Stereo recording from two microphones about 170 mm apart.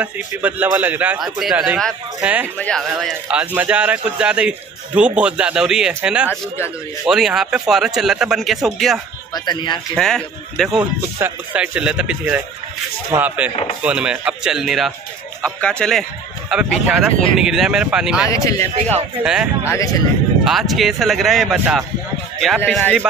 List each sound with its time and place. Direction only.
0.0 s speech: 10° right (ahead or behind)
2.6 s speech: 5° left (ahead or behind)
9.3 s speech: 25° left (ahead or behind)
9.9 s speech: centre (ahead or behind)
18.3 s speech: 20° left (ahead or behind)
19.2 s speech: 5° right (ahead or behind)
19.7 s speech: 20° left (ahead or behind)
20.4 s speech: centre (ahead or behind)